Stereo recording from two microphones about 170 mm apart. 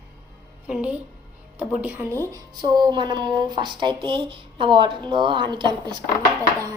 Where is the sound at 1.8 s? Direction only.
10° right (ahead or behind).